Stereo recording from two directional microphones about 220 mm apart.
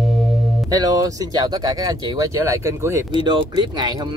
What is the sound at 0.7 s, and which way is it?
A man's voice, 15° right (ahead or behind).